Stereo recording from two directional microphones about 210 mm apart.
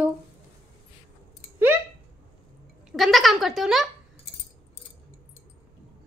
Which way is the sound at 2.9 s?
Centre (ahead or behind).